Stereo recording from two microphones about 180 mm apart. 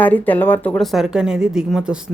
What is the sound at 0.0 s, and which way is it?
Speech, 10° left (ahead or behind).